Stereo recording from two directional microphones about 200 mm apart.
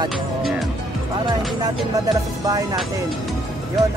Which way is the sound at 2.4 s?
20° right (ahead or behind).